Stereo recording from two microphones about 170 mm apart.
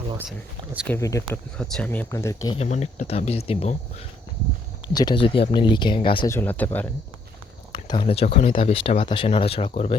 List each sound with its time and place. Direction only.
0.2 s speech: 10° right (ahead or behind)
0.9 s speech: 20° left (ahead or behind)
1.5 s speech: 5° left (ahead or behind)
2.6 s speech: 45° left (ahead or behind)
4.9 s speech: 30° left (ahead or behind)
6.2 s speech: 15° left (ahead or behind)
7.7 s speech: 30° left (ahead or behind)